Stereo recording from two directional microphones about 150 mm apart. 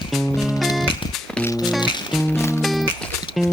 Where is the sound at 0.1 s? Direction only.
Centre (ahead or behind).